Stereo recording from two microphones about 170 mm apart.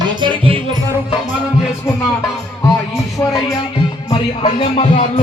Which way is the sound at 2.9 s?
15° left (ahead or behind).